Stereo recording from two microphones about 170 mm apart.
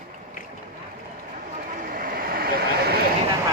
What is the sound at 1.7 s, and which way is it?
Vehicle, 55° right (ahead or behind).